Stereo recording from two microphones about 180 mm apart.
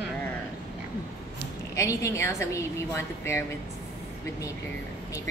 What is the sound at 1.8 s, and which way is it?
A woman's voice, 15° left (ahead or behind).